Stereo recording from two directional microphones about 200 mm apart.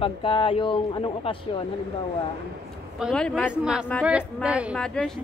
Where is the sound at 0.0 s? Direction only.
25° left (ahead or behind).